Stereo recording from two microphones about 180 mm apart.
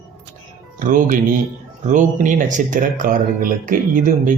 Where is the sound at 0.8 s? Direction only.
45° right (ahead or behind).